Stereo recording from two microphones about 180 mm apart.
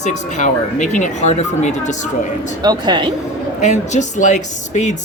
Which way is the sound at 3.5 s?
40° left (ahead or behind).